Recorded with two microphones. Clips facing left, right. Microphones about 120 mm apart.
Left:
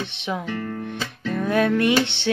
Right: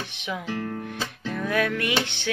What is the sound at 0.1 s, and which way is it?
Music, 30° left (ahead or behind).